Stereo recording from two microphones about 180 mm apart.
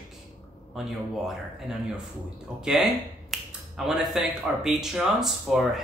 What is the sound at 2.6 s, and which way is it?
Speech, centre (ahead or behind).